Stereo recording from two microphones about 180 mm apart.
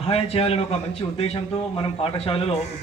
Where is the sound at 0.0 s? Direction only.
35° left (ahead or behind).